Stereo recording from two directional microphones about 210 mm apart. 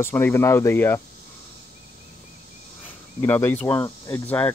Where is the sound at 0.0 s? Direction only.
10° left (ahead or behind).